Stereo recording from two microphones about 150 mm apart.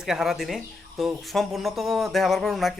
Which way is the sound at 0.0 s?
5° right (ahead or behind).